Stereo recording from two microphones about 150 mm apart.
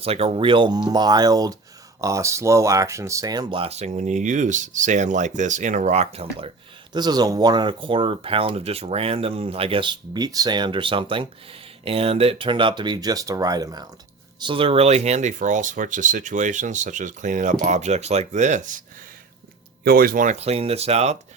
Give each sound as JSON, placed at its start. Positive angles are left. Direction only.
{"t": 0.0, "sound": "speech", "side_deg": -40}
{"t": 6.9, "sound": "speech", "side_deg": -25}
{"t": 19.8, "sound": "speech", "side_deg": -85}
{"t": 20.4, "sound": "speech", "side_deg": -40}